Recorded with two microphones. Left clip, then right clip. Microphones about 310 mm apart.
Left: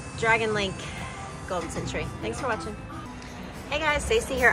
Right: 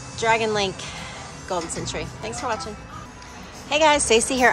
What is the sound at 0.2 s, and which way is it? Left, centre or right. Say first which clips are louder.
Speech: right 3 dB; centre.